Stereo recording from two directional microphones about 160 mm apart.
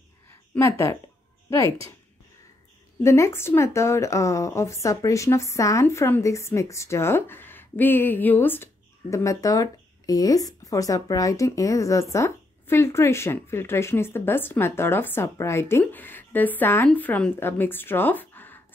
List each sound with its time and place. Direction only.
0.6 s speech: 15° left (ahead or behind)
3.0 s speech: 15° left (ahead or behind)